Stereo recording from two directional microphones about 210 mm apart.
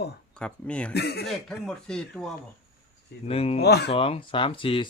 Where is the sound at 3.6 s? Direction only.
50° left (ahead or behind).